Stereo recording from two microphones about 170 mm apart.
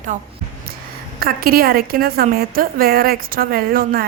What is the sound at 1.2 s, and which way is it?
A woman's voice, 60° right (ahead or behind).